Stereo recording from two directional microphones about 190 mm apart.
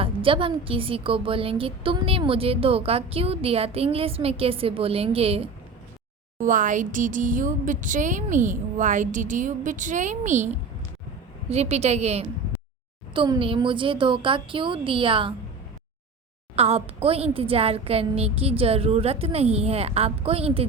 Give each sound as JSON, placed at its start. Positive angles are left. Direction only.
{"t": 0.0, "sound": "a woman's voice", "side_deg": -30}
{"t": 6.4, "sound": "a woman's voice", "side_deg": -45}
{"t": 16.6, "sound": "a woman's voice", "side_deg": -30}